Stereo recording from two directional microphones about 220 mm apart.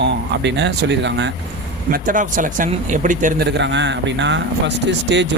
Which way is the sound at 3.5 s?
55° right (ahead or behind).